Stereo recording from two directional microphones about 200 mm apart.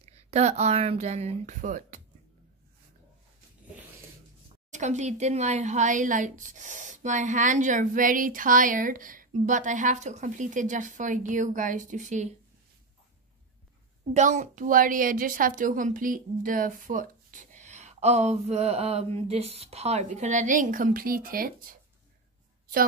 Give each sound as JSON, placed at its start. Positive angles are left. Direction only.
{"t": 0.0, "sound": "a woman's voice", "side_deg": -30}
{"t": 4.6, "sound": "a woman's voice", "side_deg": -35}
{"t": 14.1, "sound": "a woman's voice", "side_deg": -35}